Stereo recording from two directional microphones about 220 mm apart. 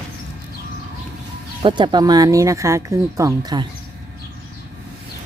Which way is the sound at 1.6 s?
20° right (ahead or behind).